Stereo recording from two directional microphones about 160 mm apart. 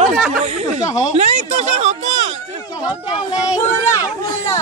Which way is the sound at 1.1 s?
45° right (ahead or behind).